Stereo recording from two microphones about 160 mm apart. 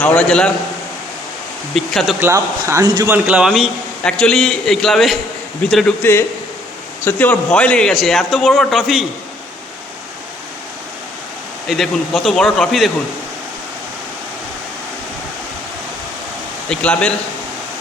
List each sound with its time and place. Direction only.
0.0 s a man's voice: 5° left (ahead or behind)
1.7 s a man's voice: centre (ahead or behind)
2.2 s speech: 15° right (ahead or behind)
3.2 s a man's voice: 5° right (ahead or behind)
11.7 s a man's voice: centre (ahead or behind)
16.6 s speech: 5° left (ahead or behind)